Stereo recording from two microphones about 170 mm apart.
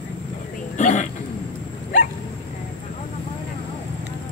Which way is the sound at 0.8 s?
45° left (ahead or behind).